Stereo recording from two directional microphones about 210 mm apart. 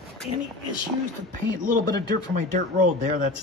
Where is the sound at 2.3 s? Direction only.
40° right (ahead or behind).